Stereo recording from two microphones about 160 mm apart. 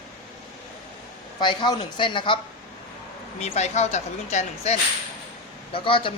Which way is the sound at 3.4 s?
45° left (ahead or behind).